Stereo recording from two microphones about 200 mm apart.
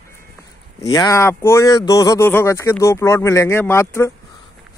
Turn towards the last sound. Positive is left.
turn(degrees=15)  # may be behind; listen again after turning